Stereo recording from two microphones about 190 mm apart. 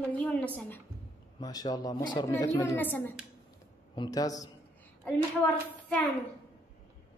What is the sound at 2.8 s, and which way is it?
A woman's voice, 10° left (ahead or behind).